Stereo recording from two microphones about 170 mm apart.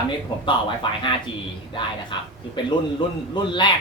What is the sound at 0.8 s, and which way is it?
Speech, 30° left (ahead or behind).